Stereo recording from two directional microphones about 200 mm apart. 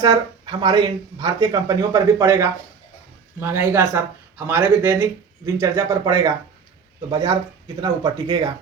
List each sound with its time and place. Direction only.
0.0 s speech: 20° right (ahead or behind)